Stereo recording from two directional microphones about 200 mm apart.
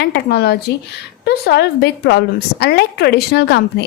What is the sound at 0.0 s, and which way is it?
A woman's voice, 55° left (ahead or behind).